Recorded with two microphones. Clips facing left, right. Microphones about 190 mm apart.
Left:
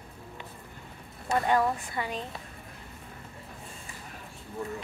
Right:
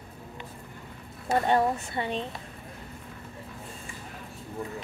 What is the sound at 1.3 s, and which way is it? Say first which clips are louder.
Speech: right 2 dB; 30° right (ahead or behind).